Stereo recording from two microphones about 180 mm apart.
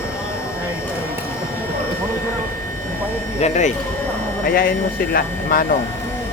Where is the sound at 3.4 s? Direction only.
40° left (ahead or behind).